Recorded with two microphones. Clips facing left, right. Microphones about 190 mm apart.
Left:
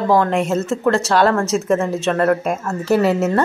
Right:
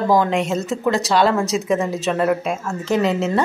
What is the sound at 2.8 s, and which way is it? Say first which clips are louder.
Speech: left 3 dB; 10° left (ahead or behind).